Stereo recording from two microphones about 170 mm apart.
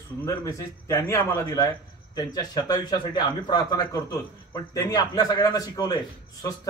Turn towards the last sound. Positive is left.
turn(degrees=20)  # may be behind; listen again after turning